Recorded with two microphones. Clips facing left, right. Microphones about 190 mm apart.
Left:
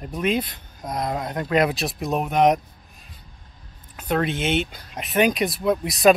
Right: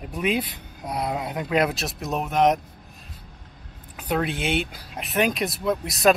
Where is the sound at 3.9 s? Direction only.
5° right (ahead or behind).